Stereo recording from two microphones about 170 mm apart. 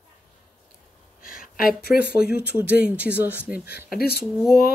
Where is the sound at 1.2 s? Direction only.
55° left (ahead or behind).